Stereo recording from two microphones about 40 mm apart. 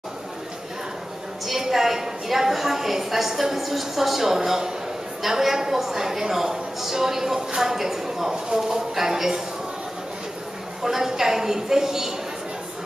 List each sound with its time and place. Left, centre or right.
1.4 s a woman's voice: centre
10.8 s a woman's voice: centre